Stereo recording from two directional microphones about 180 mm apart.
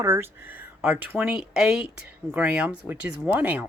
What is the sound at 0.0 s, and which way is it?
Speech, 15° right (ahead or behind).